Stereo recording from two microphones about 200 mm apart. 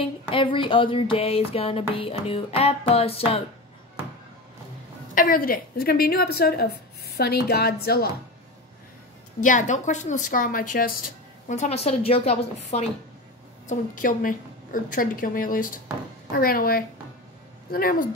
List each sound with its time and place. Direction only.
0.3 s a sound: 25° left (ahead or behind)
5.1 s a woman's voice: 45° left (ahead or behind)
9.4 s a woman's voice: 40° left (ahead or behind)
13.7 s a woman's voice: 40° left (ahead or behind)